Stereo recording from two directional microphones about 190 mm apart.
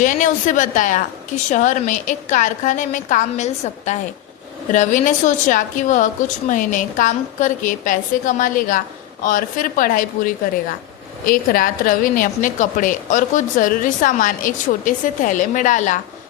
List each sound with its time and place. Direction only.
0.0 s a woman's voice: 40° left (ahead or behind)